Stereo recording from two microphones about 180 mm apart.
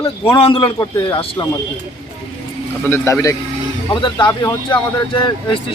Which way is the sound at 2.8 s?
15° left (ahead or behind).